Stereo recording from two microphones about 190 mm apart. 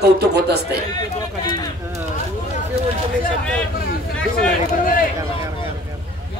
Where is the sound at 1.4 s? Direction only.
20° left (ahead or behind).